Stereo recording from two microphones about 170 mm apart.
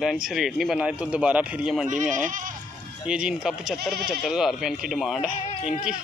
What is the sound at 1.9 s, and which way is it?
Speech, 50° right (ahead or behind).